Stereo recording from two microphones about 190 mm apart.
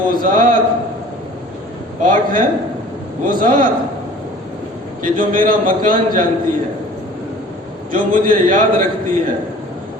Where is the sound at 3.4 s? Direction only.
45° right (ahead or behind).